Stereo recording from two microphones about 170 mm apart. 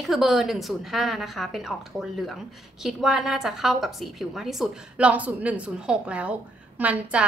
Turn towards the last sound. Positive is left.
turn(degrees=-10)  # may be behind; listen again after turning